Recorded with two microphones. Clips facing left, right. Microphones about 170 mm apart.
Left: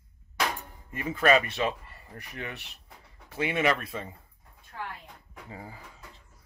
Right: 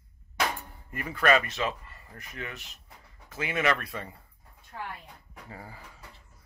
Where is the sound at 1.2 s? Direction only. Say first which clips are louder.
Left 1 dB; 35° left (ahead or behind).